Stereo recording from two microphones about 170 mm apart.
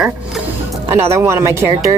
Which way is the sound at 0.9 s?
15° right (ahead or behind).